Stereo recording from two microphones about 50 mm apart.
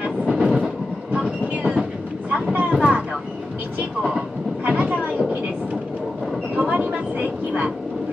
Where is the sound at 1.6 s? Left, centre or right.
Right.